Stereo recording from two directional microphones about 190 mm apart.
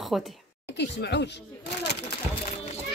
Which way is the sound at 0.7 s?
65° left (ahead or behind).